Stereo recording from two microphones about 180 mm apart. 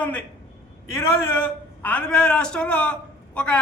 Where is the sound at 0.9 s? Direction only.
15° left (ahead or behind).